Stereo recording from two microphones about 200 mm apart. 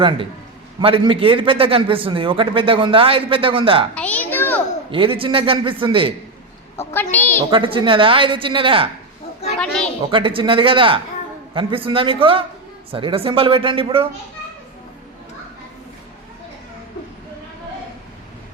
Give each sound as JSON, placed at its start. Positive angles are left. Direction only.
{"t": 0.8, "sound": "a man's voice", "side_deg": -25}
{"t": 3.9, "sound": "a sound", "side_deg": 5}
{"t": 4.9, "sound": "a man's voice", "side_deg": -25}
{"t": 6.7, "sound": "a child's voice", "side_deg": 10}
{"t": 7.5, "sound": "a man's voice", "side_deg": -25}
{"t": 9.6, "sound": "a sound", "side_deg": 5}
{"t": 10.1, "sound": "a man's voice", "side_deg": -25}